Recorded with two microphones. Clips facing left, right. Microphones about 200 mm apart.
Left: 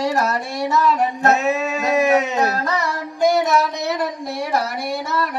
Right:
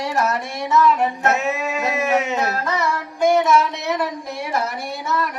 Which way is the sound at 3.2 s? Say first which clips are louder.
Right 1 dB; 40° left (ahead or behind).